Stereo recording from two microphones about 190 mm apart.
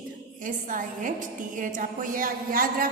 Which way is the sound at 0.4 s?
45° right (ahead or behind).